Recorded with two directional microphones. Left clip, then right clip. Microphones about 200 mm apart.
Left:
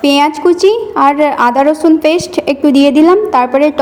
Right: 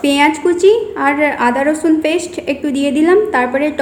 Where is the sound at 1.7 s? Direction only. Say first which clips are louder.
Left 5 dB; 10° left (ahead or behind).